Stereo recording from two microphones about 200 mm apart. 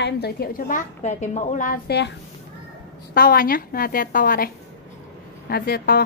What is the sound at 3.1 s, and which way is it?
A woman's voice, 50° left (ahead or behind).